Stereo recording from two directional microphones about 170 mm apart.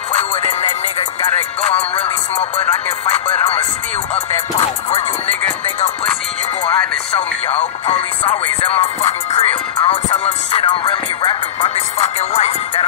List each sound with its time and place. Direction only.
0.1 s music: 40° left (ahead or behind)
4.1 s music: 35° left (ahead or behind)
6.6 s music: 35° left (ahead or behind)